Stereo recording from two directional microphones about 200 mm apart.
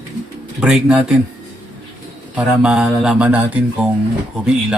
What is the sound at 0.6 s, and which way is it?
Speech, 5° right (ahead or behind).